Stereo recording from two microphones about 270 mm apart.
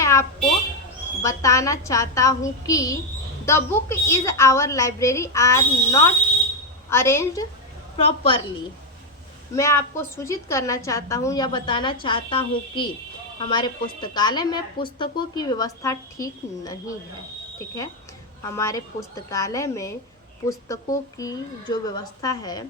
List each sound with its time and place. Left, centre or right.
0.0 s a sound: centre
1.2 s a woman's voice: centre
7.9 s a woman's voice: left
9.6 s a woman's voice: centre
18.4 s a woman's voice: centre